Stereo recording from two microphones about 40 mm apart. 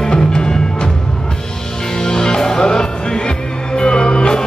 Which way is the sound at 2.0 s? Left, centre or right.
Centre.